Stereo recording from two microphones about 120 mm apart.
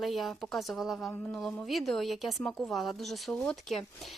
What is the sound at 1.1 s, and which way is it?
Speech, 15° left (ahead or behind).